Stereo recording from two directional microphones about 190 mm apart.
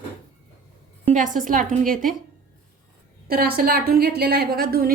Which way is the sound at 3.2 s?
50° right (ahead or behind).